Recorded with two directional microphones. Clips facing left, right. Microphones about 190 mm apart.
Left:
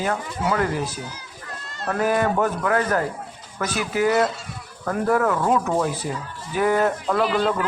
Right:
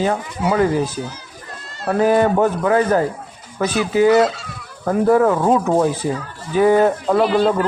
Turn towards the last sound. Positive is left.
turn(degrees=-30)  # may be behind; listen again after turning